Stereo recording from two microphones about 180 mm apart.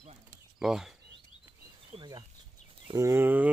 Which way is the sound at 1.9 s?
25° right (ahead or behind).